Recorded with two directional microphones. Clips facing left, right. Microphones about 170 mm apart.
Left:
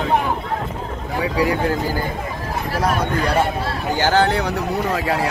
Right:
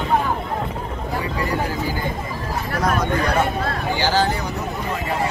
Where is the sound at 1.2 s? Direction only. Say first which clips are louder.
Left 7 dB; 90° left.